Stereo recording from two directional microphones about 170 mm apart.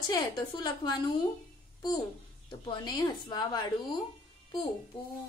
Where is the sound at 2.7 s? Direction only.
25° left (ahead or behind).